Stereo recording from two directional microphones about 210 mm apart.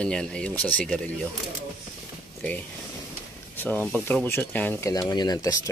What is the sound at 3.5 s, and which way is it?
Speech, 10° left (ahead or behind).